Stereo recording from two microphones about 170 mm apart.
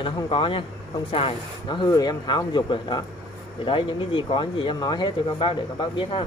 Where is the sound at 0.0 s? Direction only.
30° left (ahead or behind).